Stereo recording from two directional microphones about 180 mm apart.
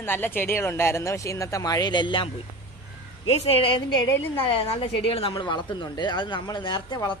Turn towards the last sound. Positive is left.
turn(degrees=25)  # may be behind; listen again after turning